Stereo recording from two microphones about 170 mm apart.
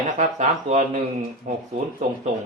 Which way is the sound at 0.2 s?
45° right (ahead or behind).